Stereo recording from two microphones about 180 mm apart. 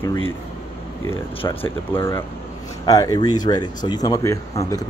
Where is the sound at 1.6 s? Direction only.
15° left (ahead or behind).